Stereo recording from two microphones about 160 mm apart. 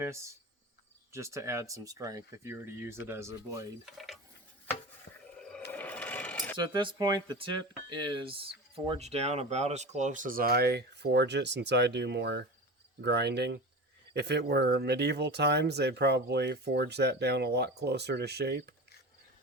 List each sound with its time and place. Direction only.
0.0 s speech: 20° right (ahead or behind)
3.8 s speech: centre (ahead or behind)
4.7 s stir: 10° left (ahead or behind)
5.1 s a sound: 55° left (ahead or behind)
5.4 s wild animals: 5° left (ahead or behind)
5.7 s sewing machine: 10° left (ahead or behind)
6.6 s speech: 30° right (ahead or behind); by 18.7 s 90° right